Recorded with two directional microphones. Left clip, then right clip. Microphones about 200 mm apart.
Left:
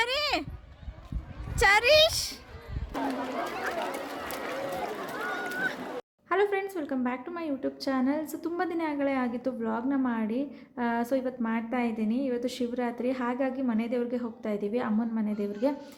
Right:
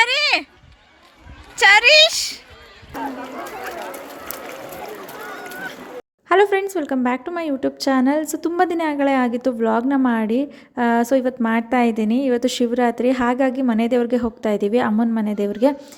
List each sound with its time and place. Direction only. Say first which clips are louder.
0.0 s sheep: right 11 dB; centre (ahead or behind)
1.5 s speech: right 10 dB; 5° left (ahead or behind)
3.0 s speech: right 3 dB; 5° right (ahead or behind)
5.5 s a sound: left 1 dB; centre (ahead or behind)
6.2 s a woman's voice: right 11 dB; 35° right (ahead or behind)